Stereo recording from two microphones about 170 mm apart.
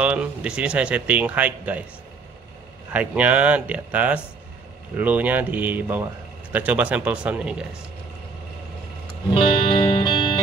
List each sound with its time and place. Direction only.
0.0 s speech: 5° right (ahead or behind)
2.9 s speech: 10° right (ahead or behind)
9.3 s music: 30° left (ahead or behind)